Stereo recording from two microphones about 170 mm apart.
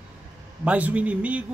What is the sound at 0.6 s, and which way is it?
Speech, 10° right (ahead or behind).